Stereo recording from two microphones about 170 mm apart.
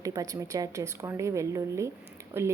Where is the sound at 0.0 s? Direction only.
20° right (ahead or behind).